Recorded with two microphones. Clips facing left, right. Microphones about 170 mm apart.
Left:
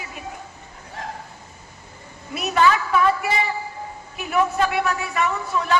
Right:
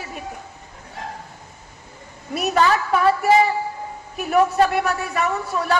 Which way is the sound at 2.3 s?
40° right (ahead or behind).